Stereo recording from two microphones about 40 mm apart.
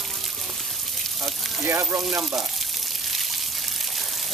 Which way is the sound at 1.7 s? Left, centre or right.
Right.